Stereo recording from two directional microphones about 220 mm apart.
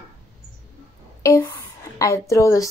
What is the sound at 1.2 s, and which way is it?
A woman's voice, 15° left (ahead or behind).